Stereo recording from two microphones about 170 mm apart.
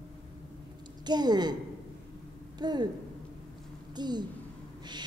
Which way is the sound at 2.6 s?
25° right (ahead or behind).